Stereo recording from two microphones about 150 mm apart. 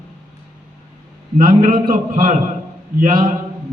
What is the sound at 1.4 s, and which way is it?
Speech, 75° right (ahead or behind).